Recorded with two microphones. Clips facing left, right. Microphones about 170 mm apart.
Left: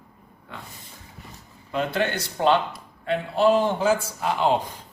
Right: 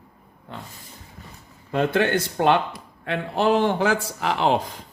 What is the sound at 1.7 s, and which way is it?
Speech, 55° right (ahead or behind).